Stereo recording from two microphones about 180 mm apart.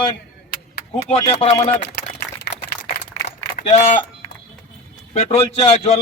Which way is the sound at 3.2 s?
40° left (ahead or behind).